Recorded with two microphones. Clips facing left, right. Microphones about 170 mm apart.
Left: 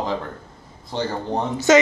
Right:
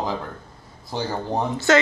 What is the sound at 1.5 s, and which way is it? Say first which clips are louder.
Speech: left 4 dB; 20° left (ahead or behind).